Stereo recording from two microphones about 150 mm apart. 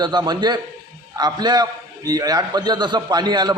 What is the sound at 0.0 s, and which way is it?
A man's voice, 30° right (ahead or behind).